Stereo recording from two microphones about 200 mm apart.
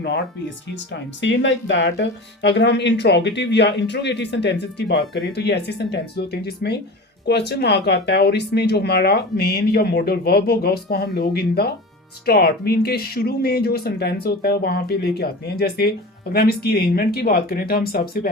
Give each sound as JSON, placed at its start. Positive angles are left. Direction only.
{"t": 1.2, "sound": "speech", "side_deg": 65}